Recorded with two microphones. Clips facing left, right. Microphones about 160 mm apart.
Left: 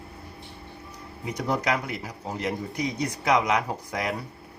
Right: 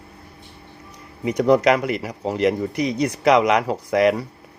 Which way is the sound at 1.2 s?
85° right.